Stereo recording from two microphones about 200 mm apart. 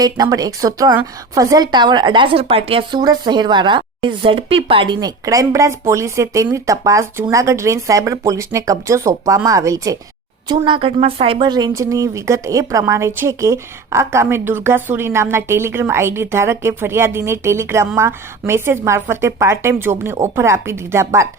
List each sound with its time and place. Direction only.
0.0 s speech: 20° right (ahead or behind)